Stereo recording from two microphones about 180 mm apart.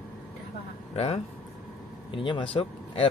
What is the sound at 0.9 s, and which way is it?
Speech, 35° left (ahead or behind).